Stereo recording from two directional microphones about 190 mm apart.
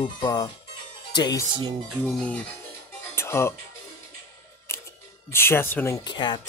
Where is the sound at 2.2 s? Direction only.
5° left (ahead or behind).